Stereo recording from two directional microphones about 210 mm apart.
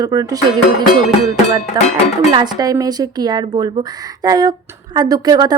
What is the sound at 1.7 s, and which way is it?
A woman's voice, 20° right (ahead or behind).